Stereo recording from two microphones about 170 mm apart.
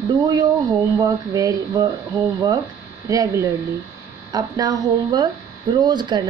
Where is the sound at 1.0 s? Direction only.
20° right (ahead or behind).